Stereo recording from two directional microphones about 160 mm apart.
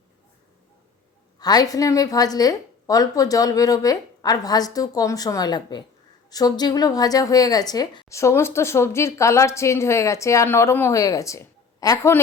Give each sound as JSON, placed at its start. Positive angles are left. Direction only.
{"t": 1.4, "sound": "a woman's voice", "side_deg": 25}